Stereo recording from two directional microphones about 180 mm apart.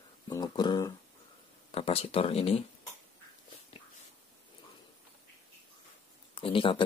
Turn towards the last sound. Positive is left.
turn(degrees=30)  # may be behind; listen again after turning